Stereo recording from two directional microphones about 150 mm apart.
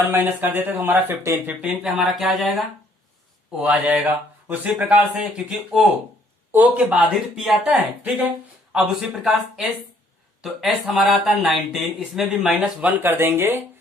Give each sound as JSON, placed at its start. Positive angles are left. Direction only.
{"t": 0.1, "sound": "speech", "side_deg": -15}
{"t": 13.0, "sound": "speech", "side_deg": -15}